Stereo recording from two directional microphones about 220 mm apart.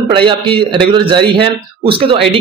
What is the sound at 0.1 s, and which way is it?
A man's voice, 25° right (ahead or behind).